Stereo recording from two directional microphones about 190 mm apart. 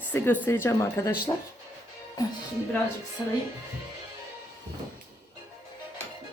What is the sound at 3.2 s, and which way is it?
Speech, 20° left (ahead or behind).